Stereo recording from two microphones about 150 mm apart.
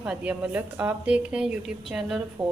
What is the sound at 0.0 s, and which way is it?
A woman's voice, 10° right (ahead or behind).